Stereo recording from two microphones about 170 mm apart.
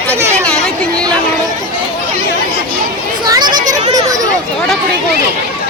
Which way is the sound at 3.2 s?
25° right (ahead or behind).